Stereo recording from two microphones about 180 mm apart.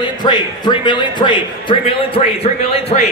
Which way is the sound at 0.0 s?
25° left (ahead or behind).